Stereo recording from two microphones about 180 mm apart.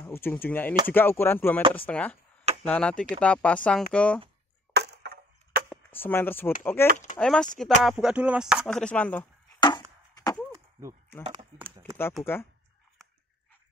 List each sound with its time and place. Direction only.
0.0 s speech: 10° left (ahead or behind)
4.7 s splinter: 65° right (ahead or behind)
5.7 s speech: 10° left (ahead or behind)
8.6 s speech: 5° left (ahead or behind)
9.6 s chop: 20° left (ahead or behind)
10.5 s chop: 15° right (ahead or behind)
11.2 s speech: 30° right (ahead or behind)